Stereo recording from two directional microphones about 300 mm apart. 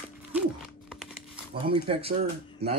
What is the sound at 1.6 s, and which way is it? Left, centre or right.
Speech, centre.